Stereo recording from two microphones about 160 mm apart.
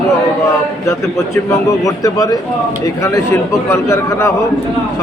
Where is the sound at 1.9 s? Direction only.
20° left (ahead or behind).